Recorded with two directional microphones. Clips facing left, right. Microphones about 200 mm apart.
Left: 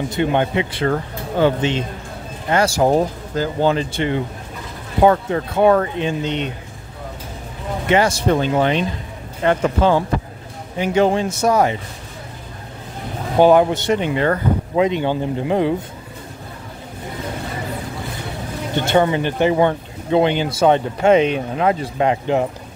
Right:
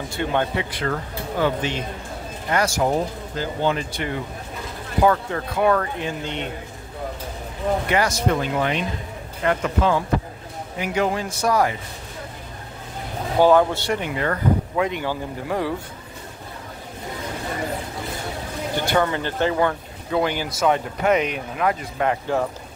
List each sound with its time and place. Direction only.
0.1 s speech: 20° left (ahead or behind)
7.8 s speech: 25° left (ahead or behind)
13.4 s speech: 20° left (ahead or behind)
18.8 s speech: 20° left (ahead or behind)